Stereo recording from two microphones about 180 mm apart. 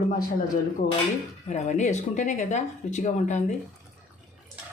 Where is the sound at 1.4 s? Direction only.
40° left (ahead or behind).